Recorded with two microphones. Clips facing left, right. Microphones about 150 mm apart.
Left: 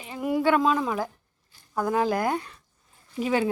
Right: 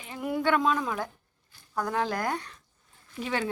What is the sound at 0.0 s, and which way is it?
A woman's voice, 5° left (ahead or behind).